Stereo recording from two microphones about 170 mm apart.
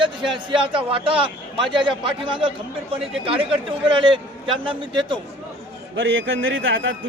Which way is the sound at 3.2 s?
30° right (ahead or behind).